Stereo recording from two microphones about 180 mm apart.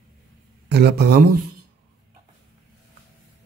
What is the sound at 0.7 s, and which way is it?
Speech, 65° right (ahead or behind).